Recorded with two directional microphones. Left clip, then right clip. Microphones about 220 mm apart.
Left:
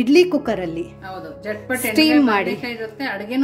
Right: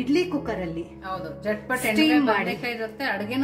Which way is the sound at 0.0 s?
45° left (ahead or behind).